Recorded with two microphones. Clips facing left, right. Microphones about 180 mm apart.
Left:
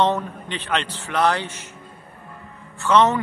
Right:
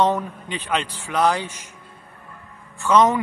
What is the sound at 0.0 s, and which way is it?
A man's voice, 10° right (ahead or behind).